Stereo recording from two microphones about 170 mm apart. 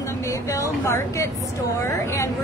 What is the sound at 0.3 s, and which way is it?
Speech, 20° left (ahead or behind).